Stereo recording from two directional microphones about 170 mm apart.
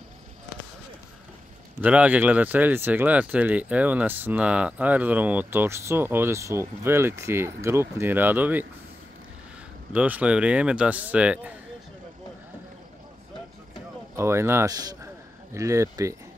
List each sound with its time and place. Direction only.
1.8 s speech: 10° right (ahead or behind)
9.9 s speech: 10° right (ahead or behind)
14.1 s speech: 15° right (ahead or behind)